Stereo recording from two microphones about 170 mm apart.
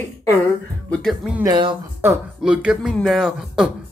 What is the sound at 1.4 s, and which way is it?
Speech, 25° right (ahead or behind).